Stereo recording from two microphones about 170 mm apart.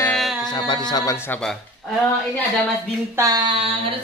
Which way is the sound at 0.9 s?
20° left (ahead or behind).